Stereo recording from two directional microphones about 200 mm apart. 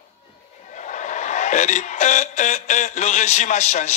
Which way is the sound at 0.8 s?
35° left (ahead or behind).